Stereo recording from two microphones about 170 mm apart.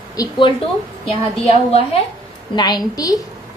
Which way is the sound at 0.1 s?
20° left (ahead or behind).